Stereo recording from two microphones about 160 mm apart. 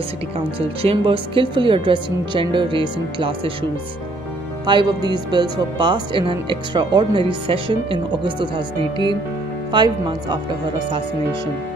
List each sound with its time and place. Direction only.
0.6 s speech: 35° right (ahead or behind)
4.6 s speech: 25° right (ahead or behind)